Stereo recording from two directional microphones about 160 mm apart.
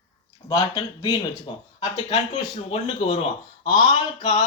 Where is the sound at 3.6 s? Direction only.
30° left (ahead or behind).